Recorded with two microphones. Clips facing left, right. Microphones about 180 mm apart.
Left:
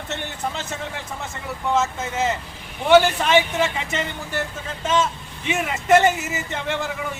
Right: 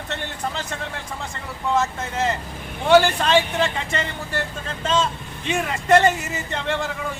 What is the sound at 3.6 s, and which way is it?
Speech, 5° left (ahead or behind).